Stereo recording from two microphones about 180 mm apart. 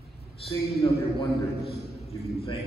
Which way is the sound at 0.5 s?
35° left (ahead or behind).